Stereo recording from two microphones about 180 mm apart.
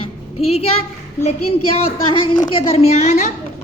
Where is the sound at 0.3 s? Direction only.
35° left (ahead or behind).